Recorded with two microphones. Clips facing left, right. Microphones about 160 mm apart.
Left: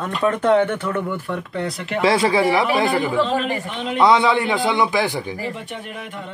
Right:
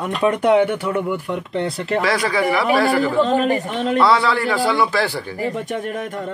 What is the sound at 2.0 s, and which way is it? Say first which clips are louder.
Speech: left 5 dB; 25° left (ahead or behind).